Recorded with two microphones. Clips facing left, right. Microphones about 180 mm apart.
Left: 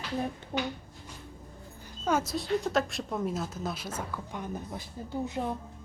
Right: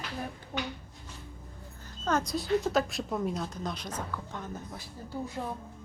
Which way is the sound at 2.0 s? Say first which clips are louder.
Left 1 dB; 5° left (ahead or behind).